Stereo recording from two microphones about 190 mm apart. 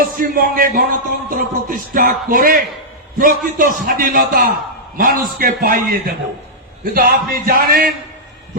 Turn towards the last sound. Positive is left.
turn(degrees=-50)  # may be behind; listen again after turning